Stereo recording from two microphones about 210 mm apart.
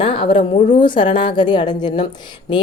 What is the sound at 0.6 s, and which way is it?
Speech, 35° left (ahead or behind).